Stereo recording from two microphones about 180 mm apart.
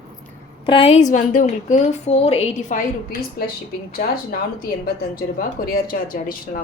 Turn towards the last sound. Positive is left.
turn(degrees=55)  # may be behind; listen again after turning